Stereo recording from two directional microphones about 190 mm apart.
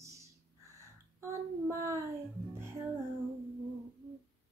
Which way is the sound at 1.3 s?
15° right (ahead or behind).